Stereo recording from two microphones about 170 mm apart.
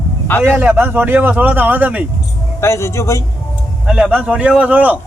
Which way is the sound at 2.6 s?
15° left (ahead or behind).